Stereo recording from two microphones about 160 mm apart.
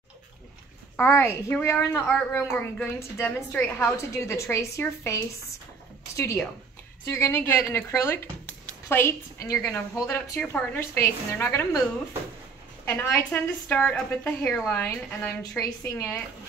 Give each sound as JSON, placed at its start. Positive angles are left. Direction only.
{"t": 0.9, "sound": "a woman's voice", "side_deg": 15}
{"t": 12.8, "sound": "a woman's voice", "side_deg": 10}